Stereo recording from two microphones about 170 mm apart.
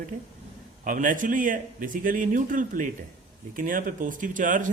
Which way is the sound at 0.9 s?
50° right (ahead or behind).